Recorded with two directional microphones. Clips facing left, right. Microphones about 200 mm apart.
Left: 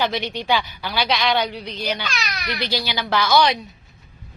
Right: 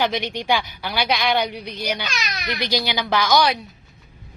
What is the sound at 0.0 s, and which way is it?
A woman's voice, 15° right (ahead or behind).